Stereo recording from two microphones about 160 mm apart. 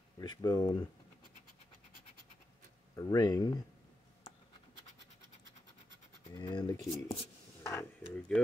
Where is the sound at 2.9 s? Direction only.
25° left (ahead or behind).